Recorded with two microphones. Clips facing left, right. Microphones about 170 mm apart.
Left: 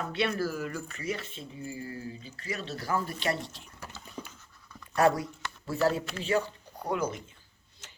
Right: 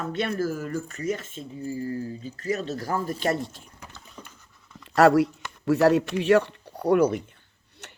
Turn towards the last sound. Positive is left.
turn(degrees=-65)  # may be behind; listen again after turning